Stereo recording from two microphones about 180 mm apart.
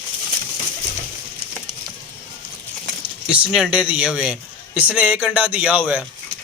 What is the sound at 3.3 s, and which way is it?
Speech, 5° right (ahead or behind).